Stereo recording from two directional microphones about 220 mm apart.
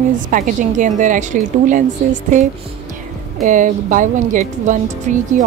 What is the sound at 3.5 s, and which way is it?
Speech, 35° right (ahead or behind).